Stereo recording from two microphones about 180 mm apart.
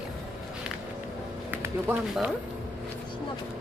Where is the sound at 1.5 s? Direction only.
10° right (ahead or behind).